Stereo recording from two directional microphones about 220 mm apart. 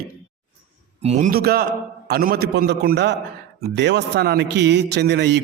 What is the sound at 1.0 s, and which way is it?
A man's voice, 30° right (ahead or behind).